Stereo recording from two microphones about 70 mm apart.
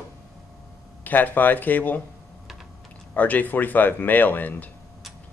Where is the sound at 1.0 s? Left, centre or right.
Left.